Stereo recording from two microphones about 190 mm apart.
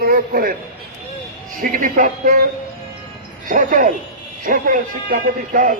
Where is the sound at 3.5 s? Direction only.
45° right (ahead or behind).